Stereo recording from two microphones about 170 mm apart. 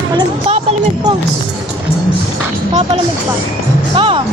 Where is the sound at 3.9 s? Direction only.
30° right (ahead or behind).